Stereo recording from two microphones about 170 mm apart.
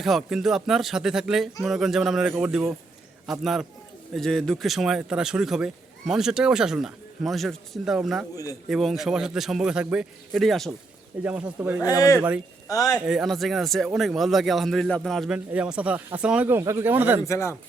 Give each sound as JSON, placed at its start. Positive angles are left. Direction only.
{"t": 0.0, "sound": "speech", "side_deg": 0}
{"t": 11.8, "sound": "speech", "side_deg": 20}
{"t": 13.1, "sound": "speech", "side_deg": 0}
{"t": 17.2, "sound": "speech", "side_deg": 15}